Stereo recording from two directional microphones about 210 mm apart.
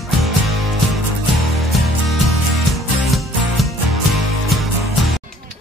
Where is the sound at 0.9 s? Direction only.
Centre (ahead or behind).